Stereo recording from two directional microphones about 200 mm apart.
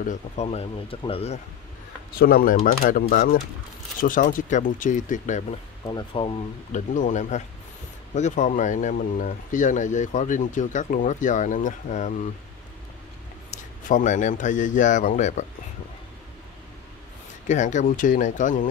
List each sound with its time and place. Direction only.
0.0 s speech: 35° left (ahead or behind)
2.1 s speech: 45° left (ahead or behind)
5.9 s speech: 25° left (ahead or behind)
13.5 s a man's voice: 40° left (ahead or behind)
17.5 s speech: 40° left (ahead or behind)